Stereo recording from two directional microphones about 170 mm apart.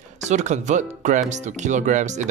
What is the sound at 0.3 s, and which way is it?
Speech, 45° right (ahead or behind).